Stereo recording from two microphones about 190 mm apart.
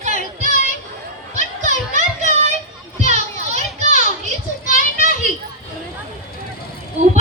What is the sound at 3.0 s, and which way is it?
Children playing, 35° right (ahead or behind).